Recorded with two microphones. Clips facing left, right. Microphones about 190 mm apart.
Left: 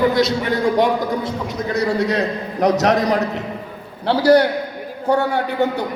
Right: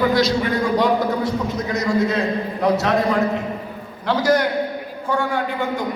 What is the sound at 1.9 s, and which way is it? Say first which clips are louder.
Speech: even; 70° left (ahead or behind).